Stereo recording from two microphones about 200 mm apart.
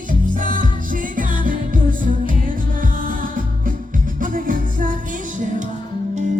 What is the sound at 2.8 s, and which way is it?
Music, 45° right (ahead or behind).